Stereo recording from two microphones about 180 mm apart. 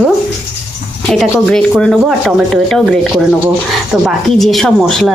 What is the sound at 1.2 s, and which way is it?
Speech, centre (ahead or behind).